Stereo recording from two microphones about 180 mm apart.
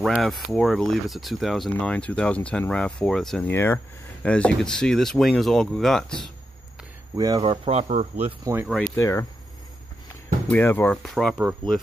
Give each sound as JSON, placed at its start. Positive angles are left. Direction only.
{"t": 0.0, "sound": "speech", "side_deg": 0}
{"t": 7.2, "sound": "speech", "side_deg": -25}
{"t": 8.3, "sound": "speech", "side_deg": -10}
{"t": 8.6, "sound": "speech", "side_deg": 5}
{"t": 8.9, "sound": "speech", "side_deg": 15}
{"t": 10.6, "sound": "speech", "side_deg": 10}